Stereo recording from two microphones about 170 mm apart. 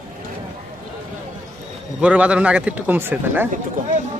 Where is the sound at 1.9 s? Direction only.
5° right (ahead or behind).